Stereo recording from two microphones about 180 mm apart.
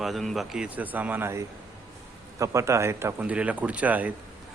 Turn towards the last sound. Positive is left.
turn(degrees=-10)  # may be behind; listen again after turning